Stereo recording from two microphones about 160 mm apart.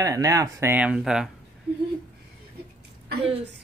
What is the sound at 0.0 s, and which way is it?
Speech, 20° right (ahead or behind).